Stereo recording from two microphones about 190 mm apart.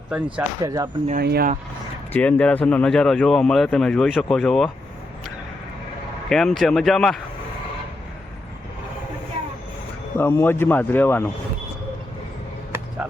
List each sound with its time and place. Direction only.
0.1 s speech: 5° right (ahead or behind)
0.6 s speech: 20° right (ahead or behind)
1.2 s speech: 55° right (ahead or behind)
2.1 s speech: 10° left (ahead or behind)
6.2 s speech: centre (ahead or behind)
10.2 s speech: 10° left (ahead or behind)
13.0 s speech: 10° right (ahead or behind)